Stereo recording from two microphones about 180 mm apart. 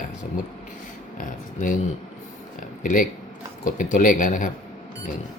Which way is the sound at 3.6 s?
45° left (ahead or behind).